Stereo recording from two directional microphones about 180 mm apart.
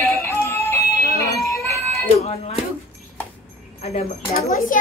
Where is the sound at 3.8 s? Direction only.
35° left (ahead or behind).